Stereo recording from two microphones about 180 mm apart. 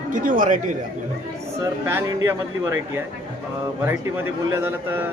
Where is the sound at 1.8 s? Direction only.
15° right (ahead or behind).